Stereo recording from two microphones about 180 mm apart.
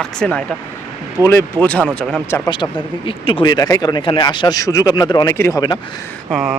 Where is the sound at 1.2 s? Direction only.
15° left (ahead or behind).